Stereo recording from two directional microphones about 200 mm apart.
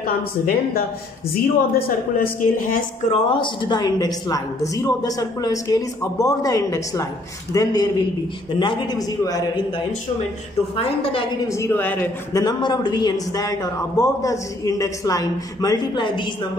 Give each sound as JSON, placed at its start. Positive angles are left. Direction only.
{"t": 1.3, "sound": "a woman's voice", "side_deg": 45}
{"t": 3.1, "sound": "a man's voice", "side_deg": 25}
{"t": 10.8, "sound": "a man's voice", "side_deg": 25}
{"t": 11.5, "sound": "speech", "side_deg": 10}